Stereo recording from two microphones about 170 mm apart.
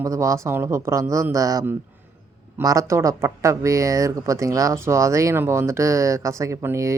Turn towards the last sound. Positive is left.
turn(degrees=-15)  # may be behind; listen again after turning